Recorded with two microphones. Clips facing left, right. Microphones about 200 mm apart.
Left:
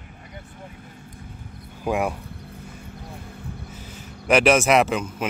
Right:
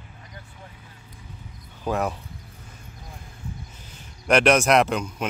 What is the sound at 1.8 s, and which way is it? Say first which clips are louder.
Speech: left 2 dB; 10° left (ahead or behind).